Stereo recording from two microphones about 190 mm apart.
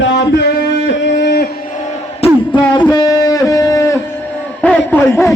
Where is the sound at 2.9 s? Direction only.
20° left (ahead or behind).